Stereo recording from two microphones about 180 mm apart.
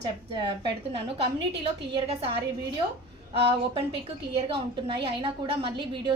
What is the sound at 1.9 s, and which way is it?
Speech, 30° right (ahead or behind).